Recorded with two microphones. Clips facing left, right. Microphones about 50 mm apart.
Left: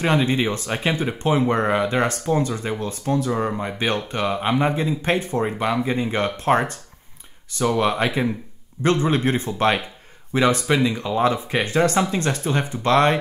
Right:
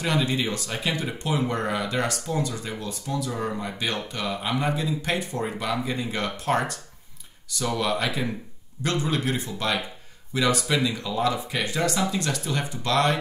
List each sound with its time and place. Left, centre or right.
0.0 s speech: left